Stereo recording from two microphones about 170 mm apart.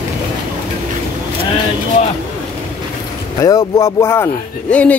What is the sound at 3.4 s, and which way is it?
Speech, 20° left (ahead or behind).